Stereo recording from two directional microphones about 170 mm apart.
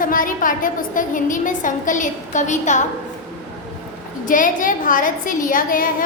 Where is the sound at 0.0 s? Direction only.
55° left (ahead or behind).